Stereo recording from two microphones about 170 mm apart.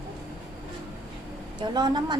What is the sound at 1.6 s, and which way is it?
Speech, 25° right (ahead or behind).